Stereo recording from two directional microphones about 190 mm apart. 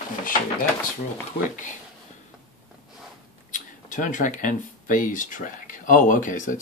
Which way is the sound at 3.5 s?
40° left (ahead or behind).